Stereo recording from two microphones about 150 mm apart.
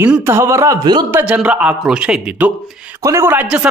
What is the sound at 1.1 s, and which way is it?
A man's voice, 10° right (ahead or behind).